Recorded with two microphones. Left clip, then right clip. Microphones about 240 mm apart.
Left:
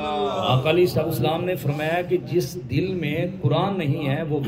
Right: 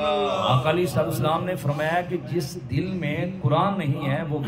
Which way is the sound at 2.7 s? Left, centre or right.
Right.